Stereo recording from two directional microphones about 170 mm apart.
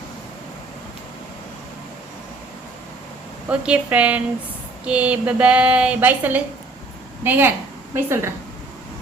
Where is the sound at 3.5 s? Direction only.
10° right (ahead or behind).